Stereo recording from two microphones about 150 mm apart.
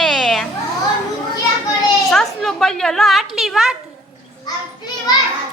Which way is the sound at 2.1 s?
5° left (ahead or behind).